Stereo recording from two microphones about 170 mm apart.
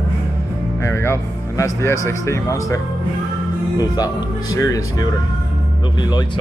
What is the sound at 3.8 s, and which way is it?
Speech, 20° left (ahead or behind).